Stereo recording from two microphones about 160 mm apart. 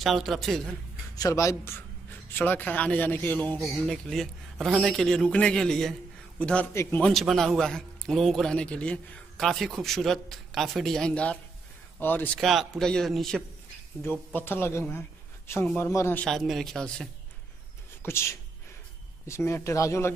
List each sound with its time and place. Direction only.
0.0 s a man's voice: centre (ahead or behind)
1.1 s a man's voice: 20° left (ahead or behind)
12.4 s a man's voice: centre (ahead or behind)
14.0 s a man's voice: 10° left (ahead or behind)
18.0 s speech: 15° left (ahead or behind)